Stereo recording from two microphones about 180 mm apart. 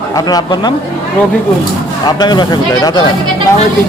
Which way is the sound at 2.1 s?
25° left (ahead or behind).